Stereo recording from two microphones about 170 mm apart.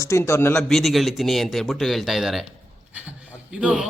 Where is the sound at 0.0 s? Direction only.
15° left (ahead or behind).